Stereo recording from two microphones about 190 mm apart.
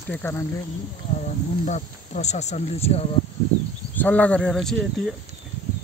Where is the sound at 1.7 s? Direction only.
40° left (ahead or behind).